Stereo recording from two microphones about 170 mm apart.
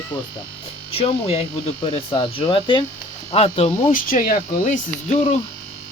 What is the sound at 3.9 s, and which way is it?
Speech, 55° left (ahead or behind).